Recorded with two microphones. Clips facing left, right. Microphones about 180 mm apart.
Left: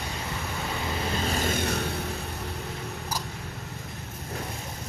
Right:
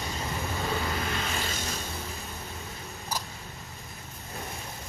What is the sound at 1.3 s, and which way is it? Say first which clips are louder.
Music: left 7 dB; 50° left (ahead or behind).